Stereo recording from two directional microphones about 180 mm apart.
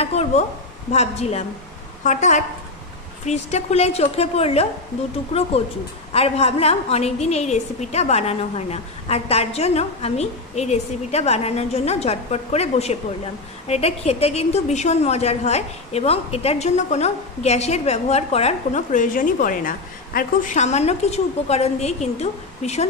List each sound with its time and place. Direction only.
0.0 s a woman's voice: 35° left (ahead or behind)
6.1 s a woman's voice: 35° left (ahead or behind)